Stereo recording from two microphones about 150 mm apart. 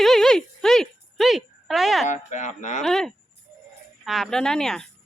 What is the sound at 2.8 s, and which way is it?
Speech, 5° left (ahead or behind).